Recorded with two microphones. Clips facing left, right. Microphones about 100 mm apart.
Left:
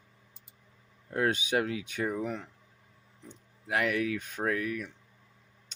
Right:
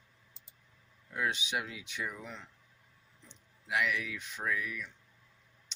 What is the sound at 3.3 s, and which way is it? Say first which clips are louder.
Speech: left 3 dB; 45° left (ahead or behind).